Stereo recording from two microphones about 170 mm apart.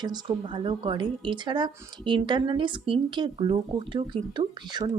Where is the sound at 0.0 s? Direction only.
25° right (ahead or behind).